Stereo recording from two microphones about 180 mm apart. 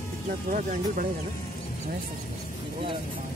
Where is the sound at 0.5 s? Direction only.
45° right (ahead or behind).